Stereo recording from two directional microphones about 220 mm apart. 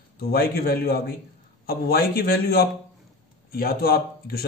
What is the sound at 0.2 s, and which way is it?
A man's voice, 45° left (ahead or behind).